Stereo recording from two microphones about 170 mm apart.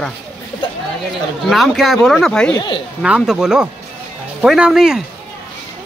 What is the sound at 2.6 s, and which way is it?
Speech, 25° left (ahead or behind).